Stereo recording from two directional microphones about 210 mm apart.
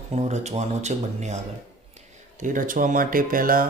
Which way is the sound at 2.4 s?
40° right (ahead or behind).